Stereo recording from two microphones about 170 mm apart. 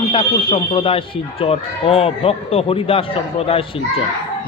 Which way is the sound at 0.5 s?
35° left (ahead or behind).